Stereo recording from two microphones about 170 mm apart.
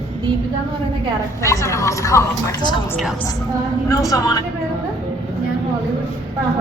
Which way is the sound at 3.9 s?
20° left (ahead or behind).